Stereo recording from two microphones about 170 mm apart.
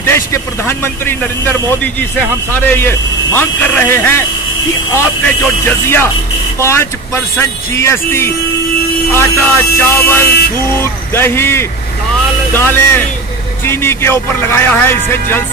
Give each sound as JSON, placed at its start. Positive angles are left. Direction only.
{"t": 0.0, "sound": "speech", "side_deg": 15}